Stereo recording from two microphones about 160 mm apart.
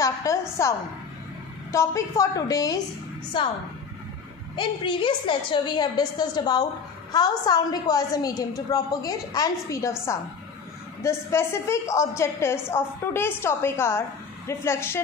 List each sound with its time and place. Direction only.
0.0 s a woman's voice: 20° left (ahead or behind)
4.6 s a woman's voice: 30° left (ahead or behind); by 15.0 s 15° left (ahead or behind)